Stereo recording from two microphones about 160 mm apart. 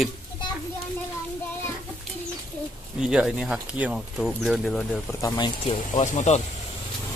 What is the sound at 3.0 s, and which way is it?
Speech, 5° right (ahead or behind).